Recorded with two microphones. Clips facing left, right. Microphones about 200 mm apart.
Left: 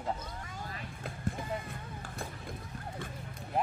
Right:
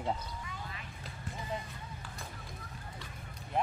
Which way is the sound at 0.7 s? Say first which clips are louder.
Left 5 dB; 55° left (ahead or behind).